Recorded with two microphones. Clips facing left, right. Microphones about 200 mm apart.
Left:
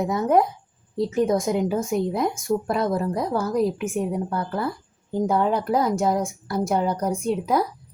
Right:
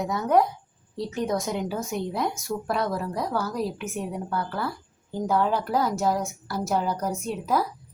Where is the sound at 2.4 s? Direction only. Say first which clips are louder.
Left 7 dB; 50° left (ahead or behind).